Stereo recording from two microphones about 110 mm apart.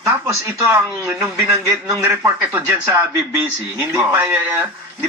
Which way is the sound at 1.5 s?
30° right (ahead or behind).